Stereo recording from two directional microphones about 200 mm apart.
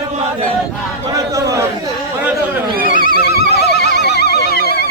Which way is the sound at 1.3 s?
15° right (ahead or behind).